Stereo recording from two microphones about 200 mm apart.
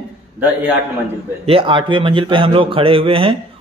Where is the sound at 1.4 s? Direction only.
25° right (ahead or behind).